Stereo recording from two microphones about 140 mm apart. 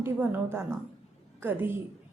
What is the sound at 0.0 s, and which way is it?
A woman's voice, 15° right (ahead or behind).